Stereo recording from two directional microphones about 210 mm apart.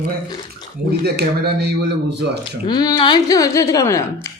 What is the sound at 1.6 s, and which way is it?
Speech, 55° right (ahead or behind).